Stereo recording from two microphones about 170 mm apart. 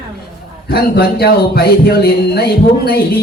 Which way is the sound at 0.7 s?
65° left (ahead or behind).